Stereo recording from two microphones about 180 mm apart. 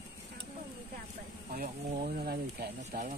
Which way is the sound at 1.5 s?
50° right (ahead or behind).